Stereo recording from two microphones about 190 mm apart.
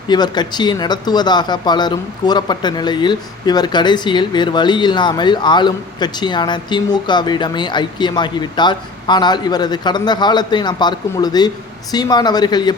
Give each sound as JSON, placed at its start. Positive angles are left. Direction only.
{"t": 0.1, "sound": "speech", "side_deg": 20}